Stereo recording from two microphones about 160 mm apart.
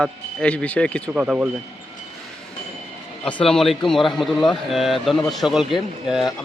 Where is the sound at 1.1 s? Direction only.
5° right (ahead or behind).